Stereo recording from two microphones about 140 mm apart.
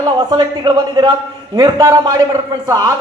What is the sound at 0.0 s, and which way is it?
A man's voice, 30° right (ahead or behind).